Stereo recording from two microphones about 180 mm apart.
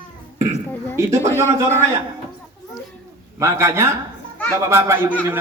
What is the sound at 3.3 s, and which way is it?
A man's voice, 15° right (ahead or behind).